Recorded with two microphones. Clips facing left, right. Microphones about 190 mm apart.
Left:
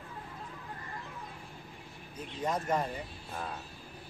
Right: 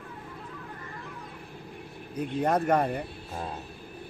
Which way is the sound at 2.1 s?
65° right (ahead or behind).